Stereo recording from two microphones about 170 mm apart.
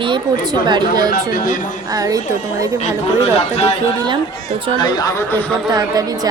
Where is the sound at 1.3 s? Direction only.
55° left (ahead or behind).